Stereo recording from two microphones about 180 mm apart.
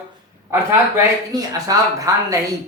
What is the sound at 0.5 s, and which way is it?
Speech, 15° right (ahead or behind).